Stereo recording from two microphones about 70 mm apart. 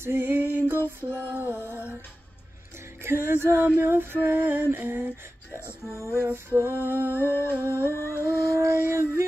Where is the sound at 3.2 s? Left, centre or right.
Right.